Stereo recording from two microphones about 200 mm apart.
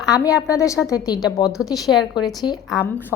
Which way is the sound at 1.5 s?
Centre (ahead or behind).